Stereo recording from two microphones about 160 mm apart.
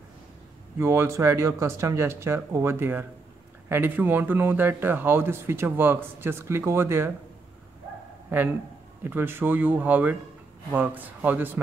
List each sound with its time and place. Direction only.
0.7 s speech: 15° right (ahead or behind)
8.3 s speech: 10° right (ahead or behind)